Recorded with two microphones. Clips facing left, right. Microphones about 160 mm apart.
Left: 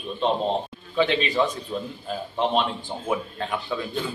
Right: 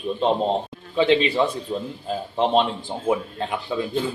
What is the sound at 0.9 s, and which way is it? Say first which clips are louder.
A man's voice: right 3 dB; 25° right (ahead or behind).